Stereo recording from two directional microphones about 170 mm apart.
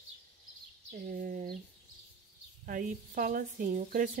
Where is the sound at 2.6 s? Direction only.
55° right (ahead or behind).